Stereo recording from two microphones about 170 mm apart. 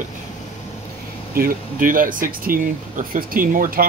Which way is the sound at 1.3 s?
55° right (ahead or behind).